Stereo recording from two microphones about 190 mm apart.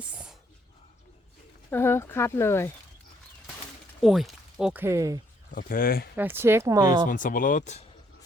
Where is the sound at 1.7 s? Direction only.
10° left (ahead or behind).